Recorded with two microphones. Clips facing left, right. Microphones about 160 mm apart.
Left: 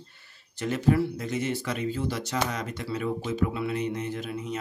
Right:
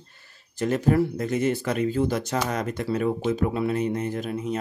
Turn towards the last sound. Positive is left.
turn(degrees=-45)  # may be behind; listen again after turning